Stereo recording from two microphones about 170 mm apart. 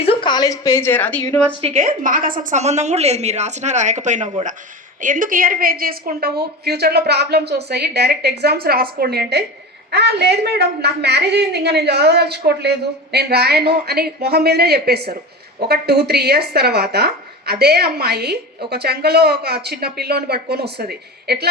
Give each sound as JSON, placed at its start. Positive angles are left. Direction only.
{"t": 0.0, "sound": "a woman's voice", "side_deg": 30}
{"t": 1.6, "sound": "a woman's voice", "side_deg": -45}